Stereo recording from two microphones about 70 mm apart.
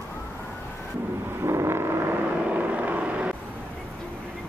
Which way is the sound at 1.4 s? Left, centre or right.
Right.